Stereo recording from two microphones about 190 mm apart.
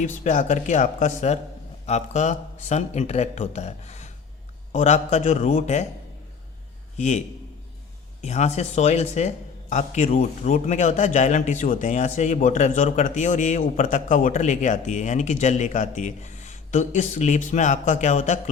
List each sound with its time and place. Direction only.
0.0 s speech: 40° left (ahead or behind)
6.9 s a man's voice: 40° left (ahead or behind)
8.2 s speech: 35° left (ahead or behind)